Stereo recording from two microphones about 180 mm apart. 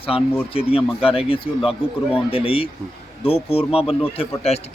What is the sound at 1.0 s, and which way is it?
Speech, 30° left (ahead or behind).